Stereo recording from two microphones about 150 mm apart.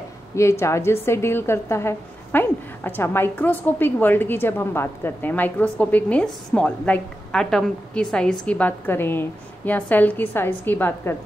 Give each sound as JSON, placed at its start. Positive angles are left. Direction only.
{"t": 0.4, "sound": "a woman's voice", "side_deg": 20}